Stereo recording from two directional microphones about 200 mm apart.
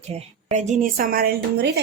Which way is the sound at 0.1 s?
35° right (ahead or behind).